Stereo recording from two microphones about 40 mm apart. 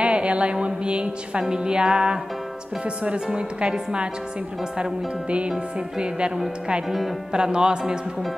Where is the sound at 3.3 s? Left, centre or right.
Right.